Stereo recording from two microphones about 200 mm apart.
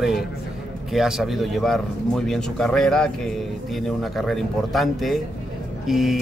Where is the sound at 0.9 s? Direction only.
Centre (ahead or behind).